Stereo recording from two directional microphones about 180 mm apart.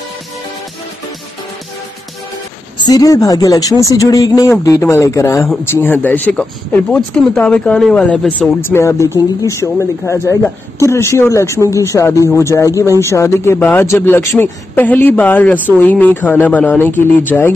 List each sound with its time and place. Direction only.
2.8 s a man's voice: 20° left (ahead or behind)